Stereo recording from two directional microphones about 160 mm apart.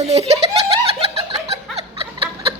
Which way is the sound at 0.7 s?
40° right (ahead or behind).